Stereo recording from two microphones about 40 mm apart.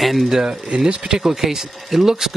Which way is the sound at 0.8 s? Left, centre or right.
Centre.